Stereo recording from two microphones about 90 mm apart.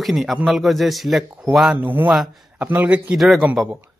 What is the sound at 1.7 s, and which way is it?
Speech, 20° right (ahead or behind).